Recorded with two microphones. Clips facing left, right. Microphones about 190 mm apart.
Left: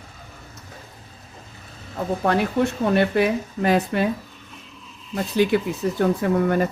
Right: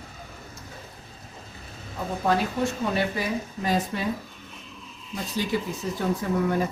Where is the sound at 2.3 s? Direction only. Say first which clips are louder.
Left 3 dB; 65° left (ahead or behind).